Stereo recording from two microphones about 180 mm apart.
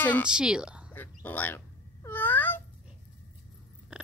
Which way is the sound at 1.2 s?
10° left (ahead or behind).